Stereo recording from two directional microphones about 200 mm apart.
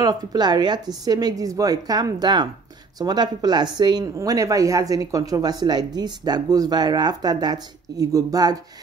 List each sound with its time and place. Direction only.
0.0 s speech: 20° right (ahead or behind)